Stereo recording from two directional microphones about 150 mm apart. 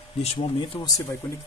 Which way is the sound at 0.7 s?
30° left (ahead or behind).